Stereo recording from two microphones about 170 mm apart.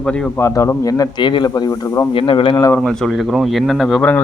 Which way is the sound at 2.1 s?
30° left (ahead or behind).